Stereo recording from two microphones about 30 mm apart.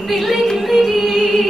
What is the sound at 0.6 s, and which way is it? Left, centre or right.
Music, centre.